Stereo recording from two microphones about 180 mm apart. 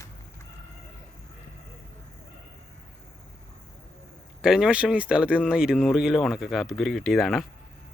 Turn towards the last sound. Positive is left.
turn(degrees=0)  # may be behind; listen again after turning